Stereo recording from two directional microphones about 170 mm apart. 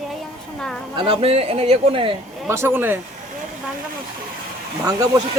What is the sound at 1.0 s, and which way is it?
A man's voice, 35° right (ahead or behind).